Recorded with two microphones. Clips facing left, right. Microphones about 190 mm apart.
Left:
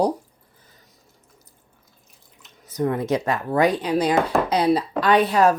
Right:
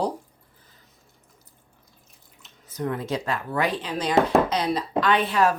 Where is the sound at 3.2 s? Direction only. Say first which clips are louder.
Left 6 dB; 45° left (ahead or behind).